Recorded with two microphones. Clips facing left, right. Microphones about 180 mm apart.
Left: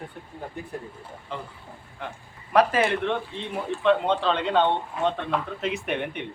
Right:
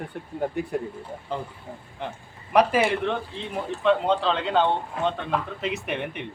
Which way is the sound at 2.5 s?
10° right (ahead or behind).